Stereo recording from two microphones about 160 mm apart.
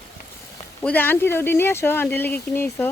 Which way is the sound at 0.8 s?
10° left (ahead or behind).